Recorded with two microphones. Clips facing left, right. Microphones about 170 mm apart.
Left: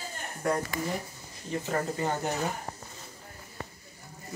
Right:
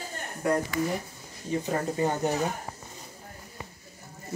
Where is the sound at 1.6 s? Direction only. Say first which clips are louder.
Right 2 dB; 15° right (ahead or behind).